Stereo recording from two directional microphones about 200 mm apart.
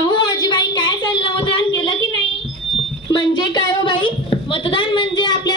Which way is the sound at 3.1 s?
20° left (ahead or behind).